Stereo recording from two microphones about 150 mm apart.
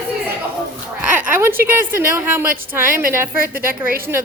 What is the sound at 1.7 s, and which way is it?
Speech, 15° right (ahead or behind).